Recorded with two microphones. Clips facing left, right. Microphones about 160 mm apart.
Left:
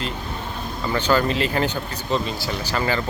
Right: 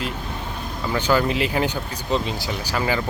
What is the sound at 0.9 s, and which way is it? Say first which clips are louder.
Speech: even; 10° right (ahead or behind).